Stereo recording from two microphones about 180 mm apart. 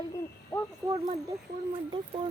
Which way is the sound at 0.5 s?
15° left (ahead or behind).